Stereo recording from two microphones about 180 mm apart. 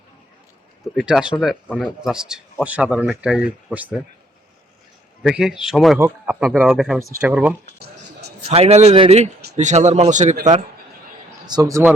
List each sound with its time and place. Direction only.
0.9 s speech: 5° right (ahead or behind)
5.2 s speech: 5° right (ahead or behind)
8.4 s speech: 35° right (ahead or behind)
11.4 s a man's voice: 20° right (ahead or behind)